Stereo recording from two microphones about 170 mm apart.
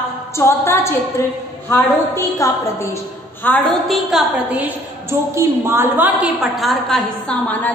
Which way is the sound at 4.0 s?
Centre (ahead or behind).